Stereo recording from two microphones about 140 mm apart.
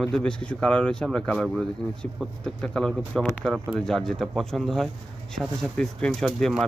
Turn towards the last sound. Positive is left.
turn(degrees=0)  # may be behind; listen again after turning